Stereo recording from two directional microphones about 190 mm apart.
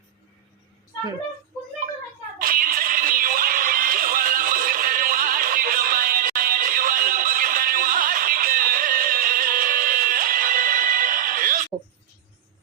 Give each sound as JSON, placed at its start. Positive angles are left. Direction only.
{"t": 2.4, "sound": "music", "side_deg": -45}